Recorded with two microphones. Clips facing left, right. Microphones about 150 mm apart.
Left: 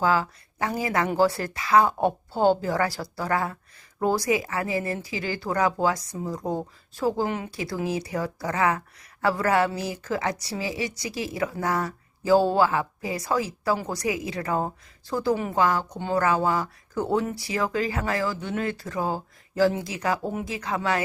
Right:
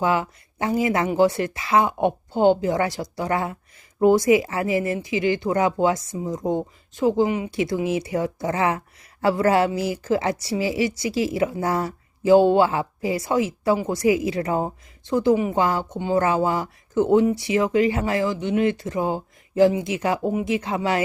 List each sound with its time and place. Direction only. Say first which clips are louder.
0.0 s a woman's voice: right 1 dB; 20° right (ahead or behind)
7.3 s speech: right 5 dB; 10° right (ahead or behind)
7.5 s a woman's voice: right 5 dB; 25° right (ahead or behind)